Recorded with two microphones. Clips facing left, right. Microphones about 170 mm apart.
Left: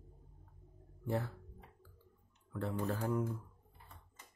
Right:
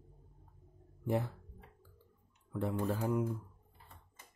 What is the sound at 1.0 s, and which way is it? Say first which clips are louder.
Speech: right 3 dB; 15° right (ahead or behind).